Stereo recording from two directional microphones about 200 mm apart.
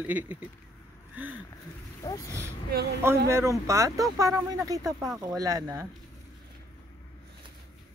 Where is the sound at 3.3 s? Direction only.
15° right (ahead or behind).